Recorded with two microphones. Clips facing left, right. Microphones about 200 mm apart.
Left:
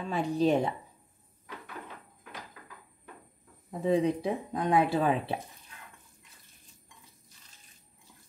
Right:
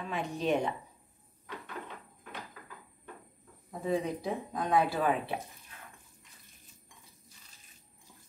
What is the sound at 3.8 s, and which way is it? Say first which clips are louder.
Speech: left 5 dB; 30° left (ahead or behind).